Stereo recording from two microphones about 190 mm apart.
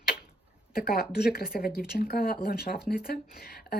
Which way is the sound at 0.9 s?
55° left (ahead or behind).